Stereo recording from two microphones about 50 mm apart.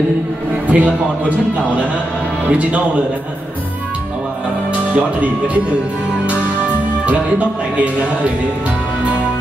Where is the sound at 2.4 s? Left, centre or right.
Right.